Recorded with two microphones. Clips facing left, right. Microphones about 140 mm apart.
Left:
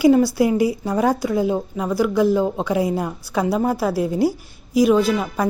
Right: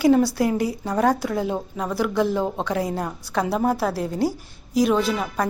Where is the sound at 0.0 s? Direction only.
5° left (ahead or behind).